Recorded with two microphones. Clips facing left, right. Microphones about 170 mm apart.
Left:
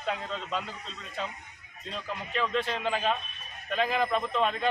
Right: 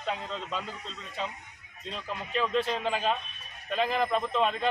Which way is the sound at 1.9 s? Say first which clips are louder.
Right 1 dB; centre (ahead or behind).